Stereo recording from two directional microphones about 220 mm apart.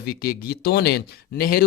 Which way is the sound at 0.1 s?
40° left (ahead or behind).